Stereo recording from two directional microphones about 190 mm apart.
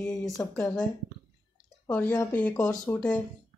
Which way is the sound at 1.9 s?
10° left (ahead or behind).